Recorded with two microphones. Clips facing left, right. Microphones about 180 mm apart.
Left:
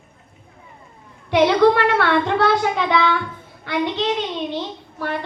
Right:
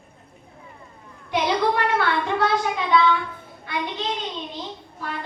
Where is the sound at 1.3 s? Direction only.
70° left (ahead or behind).